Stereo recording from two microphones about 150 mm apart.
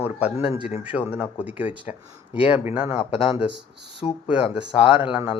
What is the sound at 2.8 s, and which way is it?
A man's voice, 40° left (ahead or behind).